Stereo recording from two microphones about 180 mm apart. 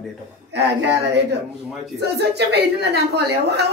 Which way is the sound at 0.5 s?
70° right (ahead or behind).